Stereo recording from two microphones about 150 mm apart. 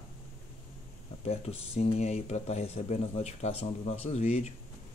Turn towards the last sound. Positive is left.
turn(degrees=45)  # may be behind; listen again after turning